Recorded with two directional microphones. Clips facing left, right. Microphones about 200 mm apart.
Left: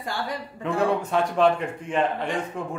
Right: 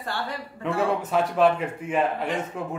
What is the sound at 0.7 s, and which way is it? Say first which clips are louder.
A man's voice: left 1 dB; 5° right (ahead or behind).